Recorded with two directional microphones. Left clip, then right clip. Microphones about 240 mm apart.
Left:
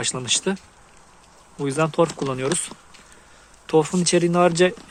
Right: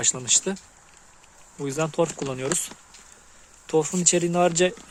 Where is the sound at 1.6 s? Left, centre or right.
Centre.